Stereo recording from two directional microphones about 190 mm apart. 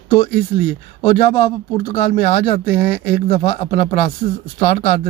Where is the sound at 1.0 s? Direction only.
30° left (ahead or behind).